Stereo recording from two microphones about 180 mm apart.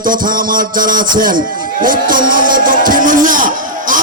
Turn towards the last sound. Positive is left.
turn(degrees=-50)  # may be behind; listen again after turning